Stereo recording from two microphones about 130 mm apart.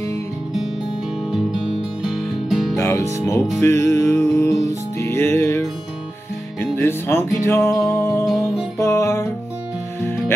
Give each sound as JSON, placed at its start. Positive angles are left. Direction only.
{"t": 2.0, "sound": "music", "side_deg": 0}
{"t": 2.7, "sound": "music", "side_deg": 20}
{"t": 8.3, "sound": "music", "side_deg": -5}
{"t": 8.7, "sound": "music", "side_deg": 20}